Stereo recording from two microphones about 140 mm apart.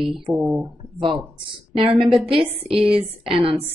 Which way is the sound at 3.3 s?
40° right (ahead or behind).